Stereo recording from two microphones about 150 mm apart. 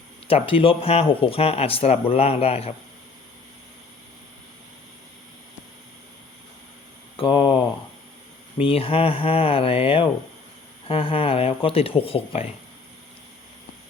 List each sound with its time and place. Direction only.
0.3 s speech: 40° left (ahead or behind)
7.2 s a sound: 35° left (ahead or behind)
8.5 s speech: 40° left (ahead or behind)